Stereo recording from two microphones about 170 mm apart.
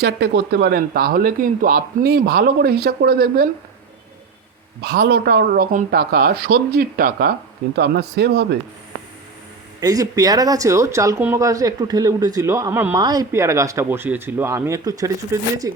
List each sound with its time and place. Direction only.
0.0 s speech: 80° right; by 3.5 s 60° right (ahead or behind)
4.8 s speech: 70° right (ahead or behind)
7.8 s speech: 75° right (ahead or behind)
9.8 s speech: 20° right (ahead or behind)